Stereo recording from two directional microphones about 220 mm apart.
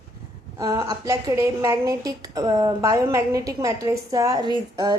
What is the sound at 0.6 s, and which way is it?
A woman's voice, 15° right (ahead or behind).